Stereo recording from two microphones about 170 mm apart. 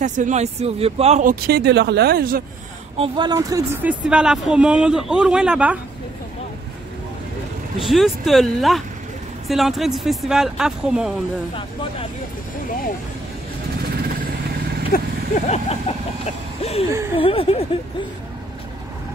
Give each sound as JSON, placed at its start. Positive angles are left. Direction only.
{"t": 0.0, "sound": "speech", "side_deg": -45}
{"t": 1.2, "sound": "speech", "side_deg": -65}
{"t": 3.0, "sound": "speech", "side_deg": -25}
{"t": 7.8, "sound": "speech", "side_deg": 0}
{"t": 14.9, "sound": "speech", "side_deg": 45}
{"t": 17.2, "sound": "speech", "side_deg": 35}